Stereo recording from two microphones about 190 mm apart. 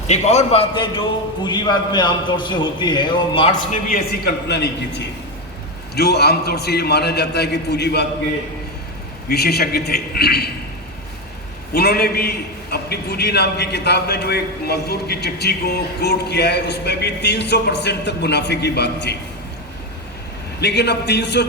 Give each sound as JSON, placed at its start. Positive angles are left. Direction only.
{"t": 0.1, "sound": "a man's voice", "side_deg": 35}
{"t": 3.8, "sound": "a man's voice", "side_deg": 55}
{"t": 9.3, "sound": "a man's voice", "side_deg": 55}
{"t": 11.7, "sound": "a man's voice", "side_deg": 55}
{"t": 20.6, "sound": "a man's voice", "side_deg": 60}